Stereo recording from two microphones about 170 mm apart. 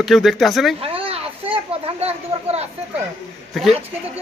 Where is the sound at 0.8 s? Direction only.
35° right (ahead or behind).